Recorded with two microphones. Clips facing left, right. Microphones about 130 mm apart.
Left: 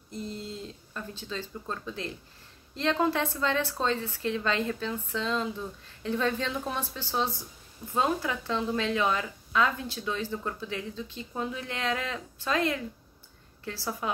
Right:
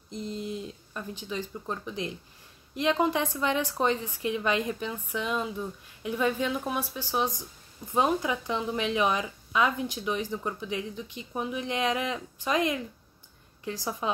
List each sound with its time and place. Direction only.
0.1 s a woman's voice: 20° right (ahead or behind)